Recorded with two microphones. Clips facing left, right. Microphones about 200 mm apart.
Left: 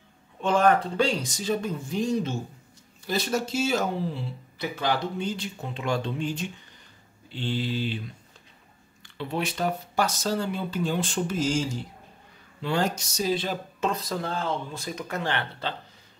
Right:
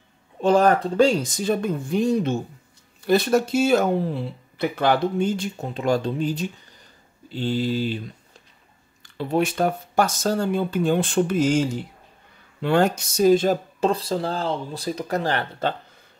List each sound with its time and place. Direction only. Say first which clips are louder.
0.4 s speech: right 4 dB; 35° right (ahead or behind)
9.0 s speech: right 8 dB; 40° right (ahead or behind)